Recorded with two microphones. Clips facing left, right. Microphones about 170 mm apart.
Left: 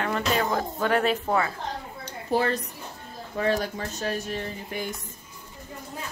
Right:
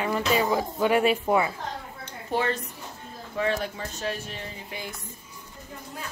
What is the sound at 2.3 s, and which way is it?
Speech, 35° left (ahead or behind).